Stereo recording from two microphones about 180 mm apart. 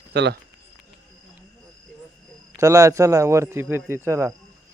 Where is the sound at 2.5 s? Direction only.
15° right (ahead or behind).